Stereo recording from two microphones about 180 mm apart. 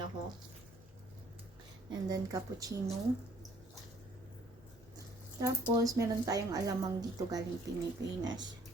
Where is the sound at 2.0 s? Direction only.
20° right (ahead or behind).